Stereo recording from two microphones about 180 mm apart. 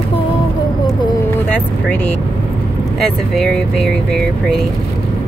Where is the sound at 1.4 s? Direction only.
10° left (ahead or behind).